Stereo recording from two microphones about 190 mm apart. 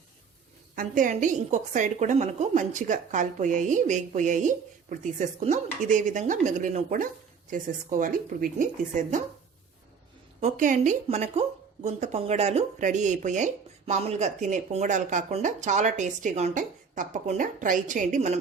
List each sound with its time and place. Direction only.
0.8 s a woman's voice: 45° right (ahead or behind)
10.4 s a woman's voice: 40° right (ahead or behind)